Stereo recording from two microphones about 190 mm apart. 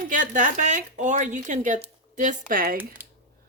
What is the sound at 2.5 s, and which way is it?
Speech, 50° right (ahead or behind).